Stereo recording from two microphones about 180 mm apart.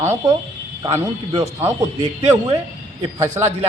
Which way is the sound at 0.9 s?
35° right (ahead or behind).